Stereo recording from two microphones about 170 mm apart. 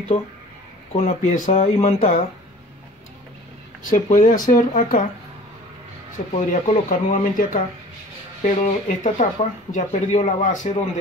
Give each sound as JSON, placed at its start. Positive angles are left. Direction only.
{"t": 0.1, "sound": "speech", "side_deg": 50}
{"t": 3.9, "sound": "speech", "side_deg": 50}
{"t": 6.1, "sound": "speech", "side_deg": 45}